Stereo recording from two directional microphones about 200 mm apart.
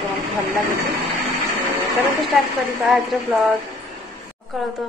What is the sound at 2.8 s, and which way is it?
A woman's voice, centre (ahead or behind).